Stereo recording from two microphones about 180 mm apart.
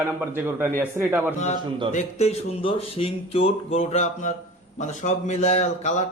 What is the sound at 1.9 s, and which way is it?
Speech, 35° left (ahead or behind).